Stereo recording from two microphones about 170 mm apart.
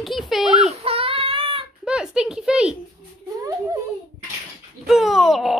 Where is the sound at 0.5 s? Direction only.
35° right (ahead or behind).